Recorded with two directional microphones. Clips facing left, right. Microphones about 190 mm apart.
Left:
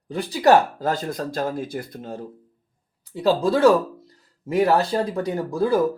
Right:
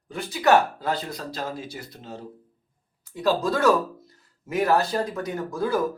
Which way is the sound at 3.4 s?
30° left (ahead or behind).